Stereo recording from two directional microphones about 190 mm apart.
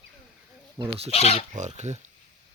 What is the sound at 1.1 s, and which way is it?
Speech, 30° left (ahead or behind).